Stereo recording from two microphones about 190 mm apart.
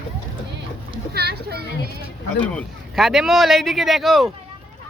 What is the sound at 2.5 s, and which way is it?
Speech, centre (ahead or behind).